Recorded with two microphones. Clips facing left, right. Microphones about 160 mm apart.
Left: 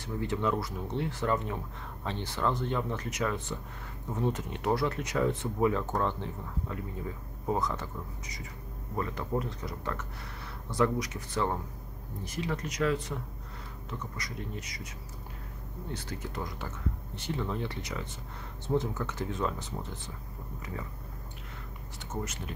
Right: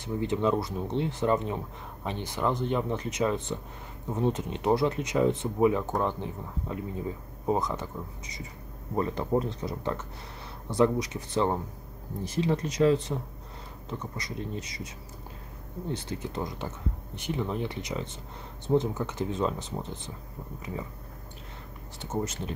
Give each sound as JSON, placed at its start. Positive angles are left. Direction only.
{"t": 0.0, "sound": "speech", "side_deg": -20}
{"t": 15.9, "sound": "speech", "side_deg": -20}
{"t": 22.0, "sound": "speech", "side_deg": -30}